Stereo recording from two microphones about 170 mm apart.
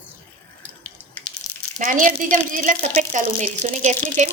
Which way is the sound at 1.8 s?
50° right (ahead or behind).